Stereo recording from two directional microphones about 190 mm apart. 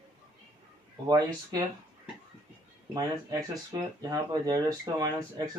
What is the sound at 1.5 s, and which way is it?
Speech, 20° right (ahead or behind).